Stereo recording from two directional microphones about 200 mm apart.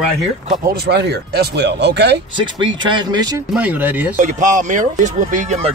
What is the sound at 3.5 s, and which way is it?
Speech, 10° right (ahead or behind).